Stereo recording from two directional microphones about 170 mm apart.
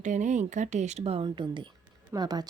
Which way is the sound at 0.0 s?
45° right (ahead or behind).